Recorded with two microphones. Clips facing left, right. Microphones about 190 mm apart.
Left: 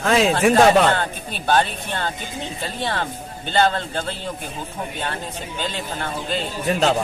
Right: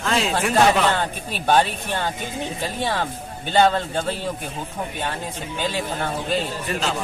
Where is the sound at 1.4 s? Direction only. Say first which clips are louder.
Right 1 dB; 10° right (ahead or behind).